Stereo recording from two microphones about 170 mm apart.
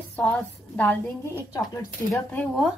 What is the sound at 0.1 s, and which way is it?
A woman's voice, 10° left (ahead or behind).